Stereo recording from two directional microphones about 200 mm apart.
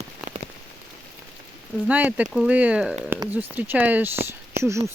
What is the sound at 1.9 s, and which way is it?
Speech, 5° right (ahead or behind).